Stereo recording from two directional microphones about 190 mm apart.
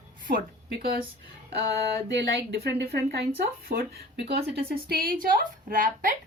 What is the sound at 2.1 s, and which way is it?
A woman's voice, 60° right (ahead or behind).